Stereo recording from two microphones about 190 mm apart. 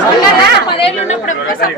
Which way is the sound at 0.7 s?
30° left (ahead or behind).